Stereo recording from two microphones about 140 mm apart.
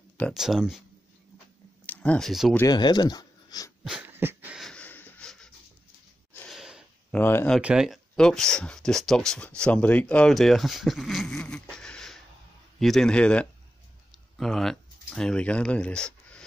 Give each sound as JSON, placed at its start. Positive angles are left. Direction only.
{"t": 0.3, "sound": "speech", "side_deg": 0}
{"t": 1.9, "sound": "speech", "side_deg": 5}
{"t": 2.7, "sound": "speech", "side_deg": 30}
{"t": 4.0, "sound": "a sound", "side_deg": -15}
{"t": 4.6, "sound": "wheeze", "side_deg": 5}
{"t": 6.5, "sound": "a sound", "side_deg": -5}
{"t": 7.1, "sound": "speech", "side_deg": 15}
{"t": 7.5, "sound": "speech", "side_deg": -5}